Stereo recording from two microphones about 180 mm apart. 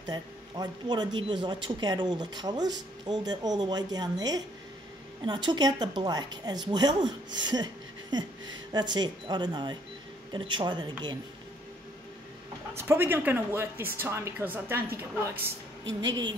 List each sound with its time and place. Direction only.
0.1 s a woman's voice: 25° right (ahead or behind)
12.7 s a woman's voice: 10° right (ahead or behind)